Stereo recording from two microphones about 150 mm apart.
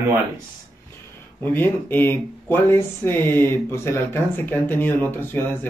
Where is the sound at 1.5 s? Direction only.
15° left (ahead or behind).